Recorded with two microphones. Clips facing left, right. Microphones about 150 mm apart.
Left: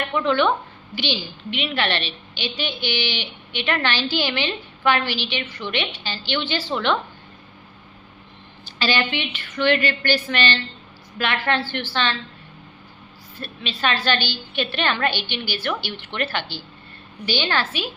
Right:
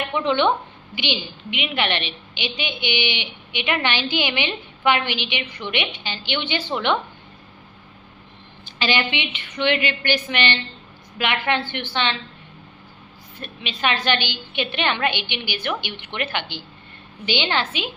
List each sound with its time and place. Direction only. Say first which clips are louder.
0.0 s a woman's voice: even; 20° right (ahead or behind)
8.8 s a woman's voice: even; 15° right (ahead or behind)
13.4 s a woman's voice: even; 15° right (ahead or behind)